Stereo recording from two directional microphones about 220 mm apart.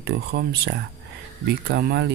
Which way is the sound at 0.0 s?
50° right (ahead or behind).